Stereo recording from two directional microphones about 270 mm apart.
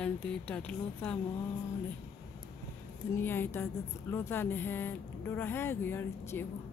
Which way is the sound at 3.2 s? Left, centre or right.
Centre.